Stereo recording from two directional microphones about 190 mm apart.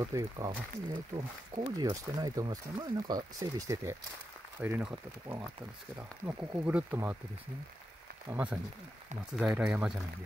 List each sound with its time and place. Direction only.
0.0 s speech: 20° right (ahead or behind)
6.2 s speech: 10° right (ahead or behind)
8.3 s speech: 10° right (ahead or behind)